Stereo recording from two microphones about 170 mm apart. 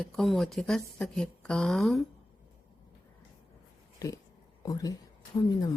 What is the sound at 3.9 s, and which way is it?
Speech, 20° left (ahead or behind).